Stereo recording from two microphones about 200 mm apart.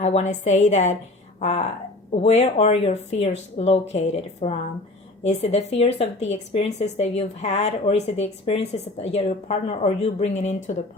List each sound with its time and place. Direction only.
0.0 s speech: 35° left (ahead or behind)